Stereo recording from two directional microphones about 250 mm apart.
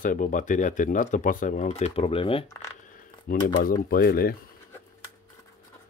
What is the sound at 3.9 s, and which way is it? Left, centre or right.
Speech, left.